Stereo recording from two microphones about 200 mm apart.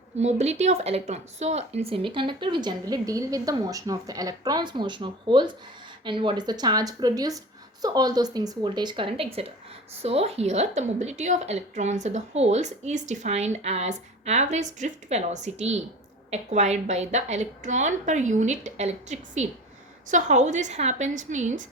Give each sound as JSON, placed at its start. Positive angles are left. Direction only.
{"t": 0.2, "sound": "a woman's voice", "side_deg": -35}